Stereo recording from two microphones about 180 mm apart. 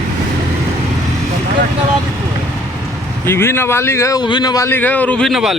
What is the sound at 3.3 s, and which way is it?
Speech, 15° left (ahead or behind).